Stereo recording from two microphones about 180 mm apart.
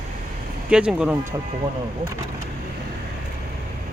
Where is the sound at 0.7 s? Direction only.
5° right (ahead or behind).